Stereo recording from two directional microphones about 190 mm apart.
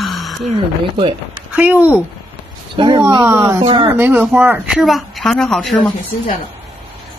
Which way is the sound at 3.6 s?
30° right (ahead or behind).